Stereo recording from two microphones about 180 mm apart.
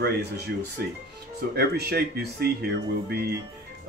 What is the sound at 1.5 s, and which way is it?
Speech, 60° right (ahead or behind).